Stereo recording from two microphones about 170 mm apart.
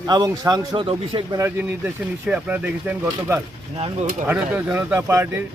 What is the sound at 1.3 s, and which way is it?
A man's voice, 15° right (ahead or behind).